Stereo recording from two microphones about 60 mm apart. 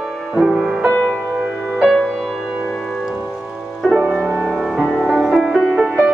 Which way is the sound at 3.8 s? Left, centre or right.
Centre.